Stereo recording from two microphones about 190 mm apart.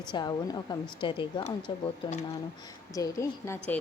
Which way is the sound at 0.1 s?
20° left (ahead or behind).